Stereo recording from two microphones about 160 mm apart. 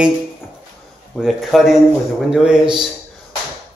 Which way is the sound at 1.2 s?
Centre (ahead or behind).